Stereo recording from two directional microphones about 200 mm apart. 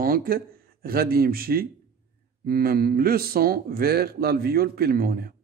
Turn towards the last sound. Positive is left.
turn(degrees=-50)  # may be behind; listen again after turning